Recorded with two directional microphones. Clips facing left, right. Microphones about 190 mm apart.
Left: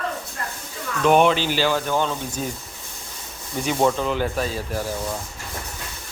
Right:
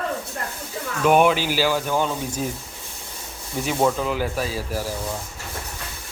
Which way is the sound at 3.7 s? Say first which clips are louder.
Left 1 dB; 5° right (ahead or behind).